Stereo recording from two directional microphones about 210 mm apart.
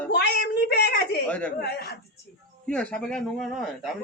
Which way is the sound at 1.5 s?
50° left (ahead or behind).